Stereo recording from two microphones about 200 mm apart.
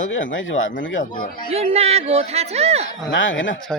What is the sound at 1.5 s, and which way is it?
A man's voice, 30° right (ahead or behind).